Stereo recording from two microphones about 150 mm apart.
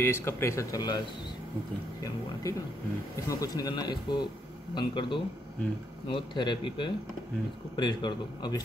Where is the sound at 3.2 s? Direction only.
25° left (ahead or behind).